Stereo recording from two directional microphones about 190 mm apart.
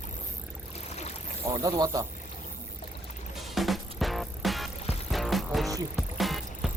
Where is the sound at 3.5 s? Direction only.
Centre (ahead or behind).